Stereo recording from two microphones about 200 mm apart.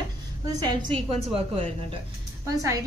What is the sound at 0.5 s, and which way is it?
Speech, 20° right (ahead or behind).